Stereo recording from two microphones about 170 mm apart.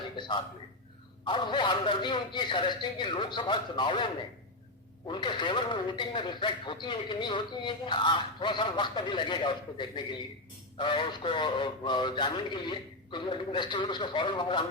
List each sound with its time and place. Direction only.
0.2 s speech: 25° left (ahead or behind)